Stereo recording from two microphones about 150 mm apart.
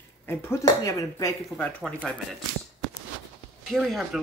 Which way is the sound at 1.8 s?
5° left (ahead or behind).